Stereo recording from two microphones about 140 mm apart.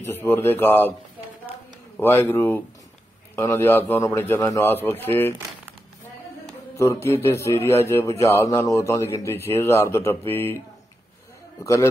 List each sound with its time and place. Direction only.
0.0 s a man's voice: 15° left (ahead or behind)
2.0 s a man's voice: 15° left (ahead or behind)
6.8 s speech: 20° left (ahead or behind)
11.6 s speech: 20° left (ahead or behind)